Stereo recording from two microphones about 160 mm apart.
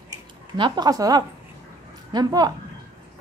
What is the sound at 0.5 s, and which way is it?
Speech, 25° right (ahead or behind).